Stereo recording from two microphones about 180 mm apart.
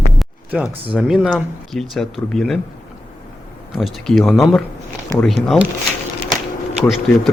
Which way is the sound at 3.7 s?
Centre (ahead or behind).